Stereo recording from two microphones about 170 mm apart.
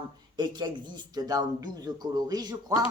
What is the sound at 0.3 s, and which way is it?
Speech, 25° right (ahead or behind).